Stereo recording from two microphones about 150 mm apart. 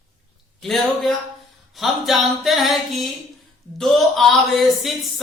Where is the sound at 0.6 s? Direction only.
Centre (ahead or behind).